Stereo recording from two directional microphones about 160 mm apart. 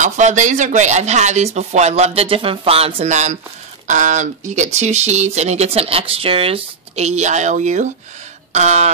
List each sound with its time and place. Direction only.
0.0 s speech: 50° right (ahead or behind)